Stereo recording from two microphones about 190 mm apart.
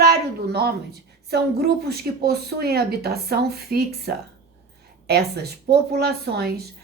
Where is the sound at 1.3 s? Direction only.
55° right (ahead or behind).